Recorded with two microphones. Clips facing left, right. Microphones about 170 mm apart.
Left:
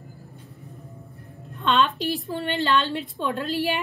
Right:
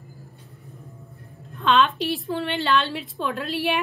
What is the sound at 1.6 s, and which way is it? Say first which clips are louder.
A woman's voice: right 2 dB; centre (ahead or behind).